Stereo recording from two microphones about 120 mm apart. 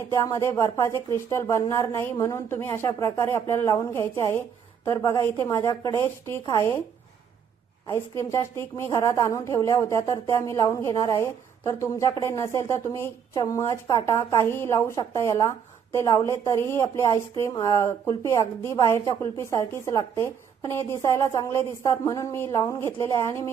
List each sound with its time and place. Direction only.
0.1 s a woman's voice: 25° left (ahead or behind)
7.9 s a woman's voice: 20° left (ahead or behind)